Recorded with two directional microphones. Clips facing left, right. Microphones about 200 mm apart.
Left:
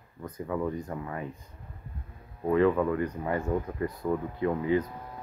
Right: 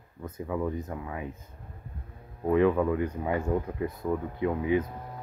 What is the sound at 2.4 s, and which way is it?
Speech, 10° right (ahead or behind).